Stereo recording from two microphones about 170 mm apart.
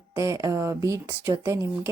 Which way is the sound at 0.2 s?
20° right (ahead or behind).